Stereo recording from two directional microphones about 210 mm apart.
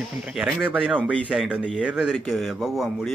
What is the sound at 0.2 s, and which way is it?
A man's voice, 5° right (ahead or behind).